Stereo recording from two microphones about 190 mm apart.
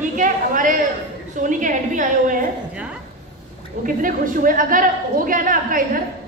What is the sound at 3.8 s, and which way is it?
A woman's voice, 45° right (ahead or behind).